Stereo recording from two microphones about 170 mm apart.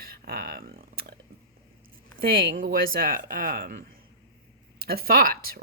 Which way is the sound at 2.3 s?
60° right (ahead or behind).